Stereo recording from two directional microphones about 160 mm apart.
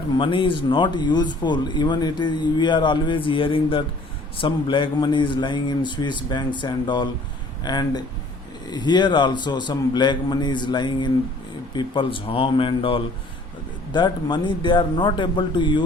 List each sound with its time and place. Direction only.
0.2 s speech: 30° left (ahead or behind)